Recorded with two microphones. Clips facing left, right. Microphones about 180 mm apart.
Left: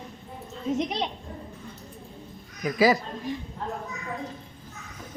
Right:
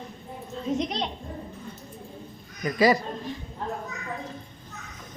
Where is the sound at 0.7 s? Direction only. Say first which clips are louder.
Left 1 dB; 5° left (ahead or behind).